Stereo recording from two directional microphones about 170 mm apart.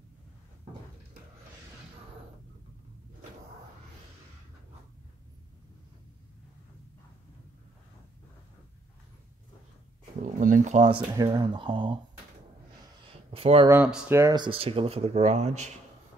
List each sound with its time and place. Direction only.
10.2 s speech: 50° right (ahead or behind)
11.1 s speech: 25° right (ahead or behind)
13.3 s a sound: 35° right (ahead or behind)
13.8 s speech: 10° right (ahead or behind); by 15.7 s 40° right (ahead or behind)